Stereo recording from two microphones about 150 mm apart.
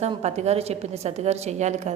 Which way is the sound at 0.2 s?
45° right (ahead or behind).